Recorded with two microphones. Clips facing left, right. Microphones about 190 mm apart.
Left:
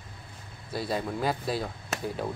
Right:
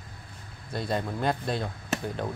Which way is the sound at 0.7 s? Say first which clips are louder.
Even; 5° left (ahead or behind).